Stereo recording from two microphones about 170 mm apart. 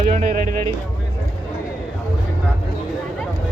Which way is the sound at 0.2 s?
50° right (ahead or behind).